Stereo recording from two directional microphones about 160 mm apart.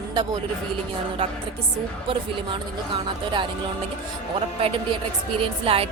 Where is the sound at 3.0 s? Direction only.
30° right (ahead or behind).